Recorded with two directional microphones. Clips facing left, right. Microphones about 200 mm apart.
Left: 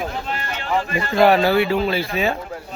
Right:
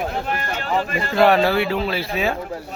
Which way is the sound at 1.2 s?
Centre (ahead or behind).